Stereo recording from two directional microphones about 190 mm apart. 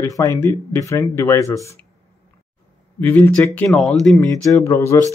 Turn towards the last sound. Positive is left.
turn(degrees=15)  # may be behind; listen again after turning